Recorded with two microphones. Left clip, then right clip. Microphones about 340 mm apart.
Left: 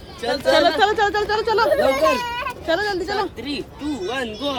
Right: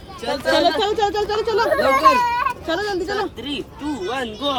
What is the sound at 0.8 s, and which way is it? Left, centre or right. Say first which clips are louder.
Speech: left 2 dB; centre.